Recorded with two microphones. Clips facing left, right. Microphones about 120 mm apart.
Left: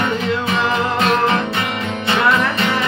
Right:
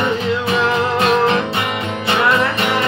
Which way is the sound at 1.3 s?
20° right (ahead or behind).